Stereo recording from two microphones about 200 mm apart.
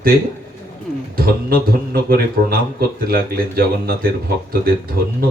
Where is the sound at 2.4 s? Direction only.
45° right (ahead or behind).